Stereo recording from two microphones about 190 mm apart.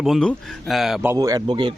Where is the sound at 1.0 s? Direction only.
15° right (ahead or behind).